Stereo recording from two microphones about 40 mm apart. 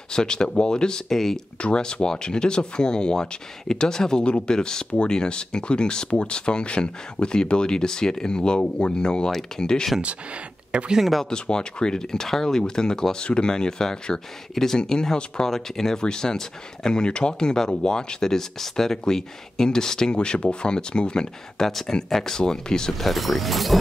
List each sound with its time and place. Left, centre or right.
0.1 s speech: centre
1.6 s speech: left
10.7 s speech: right
11.0 s speech: centre
11.2 s speech: centre
20.2 s speech: left
21.6 s speech: centre
22.9 s speech: centre